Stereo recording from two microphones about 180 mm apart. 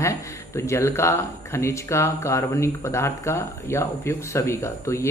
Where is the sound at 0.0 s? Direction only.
15° left (ahead or behind).